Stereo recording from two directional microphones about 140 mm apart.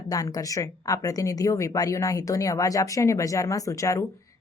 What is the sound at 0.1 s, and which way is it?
Speech, 25° left (ahead or behind).